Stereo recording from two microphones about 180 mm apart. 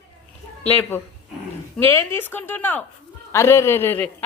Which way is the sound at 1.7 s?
10° left (ahead or behind).